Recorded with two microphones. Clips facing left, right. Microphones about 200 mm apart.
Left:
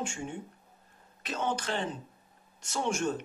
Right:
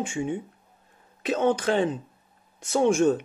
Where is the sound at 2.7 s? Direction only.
55° right (ahead or behind).